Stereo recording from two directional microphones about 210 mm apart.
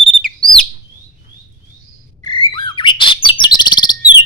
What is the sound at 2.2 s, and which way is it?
Bird, 25° left (ahead or behind).